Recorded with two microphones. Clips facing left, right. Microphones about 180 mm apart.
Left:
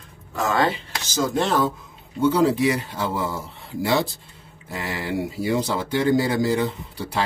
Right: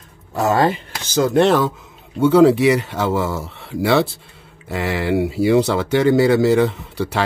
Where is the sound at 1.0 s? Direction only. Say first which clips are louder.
Right 8 dB; 60° right (ahead or behind).